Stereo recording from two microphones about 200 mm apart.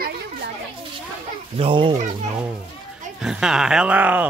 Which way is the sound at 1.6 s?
25° right (ahead or behind).